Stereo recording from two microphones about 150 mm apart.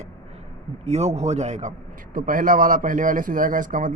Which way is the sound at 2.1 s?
70° right (ahead or behind).